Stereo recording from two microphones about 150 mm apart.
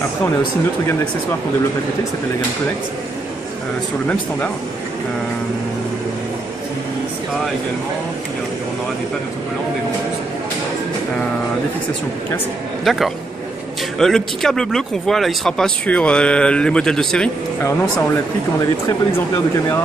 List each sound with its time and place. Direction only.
12.9 s speech: centre (ahead or behind)
18.9 s speech: 20° left (ahead or behind)